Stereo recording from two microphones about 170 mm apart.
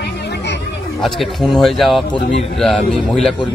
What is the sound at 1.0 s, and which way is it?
Speech, centre (ahead or behind).